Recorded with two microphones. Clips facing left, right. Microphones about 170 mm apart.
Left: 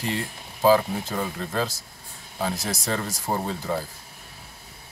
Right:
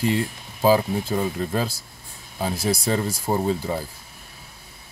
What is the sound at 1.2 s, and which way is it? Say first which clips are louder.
Speech: right 1 dB; 10° right (ahead or behind).